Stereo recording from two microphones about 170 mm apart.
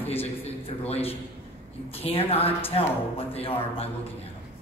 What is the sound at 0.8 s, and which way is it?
Speech, 35° left (ahead or behind).